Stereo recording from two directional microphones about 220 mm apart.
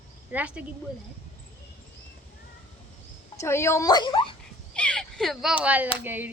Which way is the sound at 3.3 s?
10° left (ahead or behind).